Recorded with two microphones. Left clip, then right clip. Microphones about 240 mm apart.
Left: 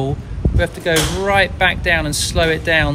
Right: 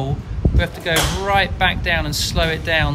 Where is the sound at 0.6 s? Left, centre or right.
Centre.